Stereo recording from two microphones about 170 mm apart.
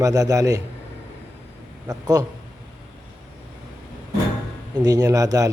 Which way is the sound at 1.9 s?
20° right (ahead or behind).